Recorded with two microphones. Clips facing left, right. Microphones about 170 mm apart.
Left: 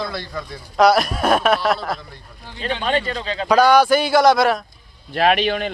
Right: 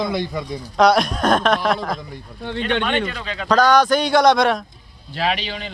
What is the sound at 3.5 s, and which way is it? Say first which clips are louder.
A man's voice: left 1 dB; 10° left (ahead or behind).